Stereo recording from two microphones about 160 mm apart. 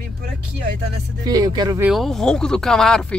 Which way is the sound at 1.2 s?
25° right (ahead or behind).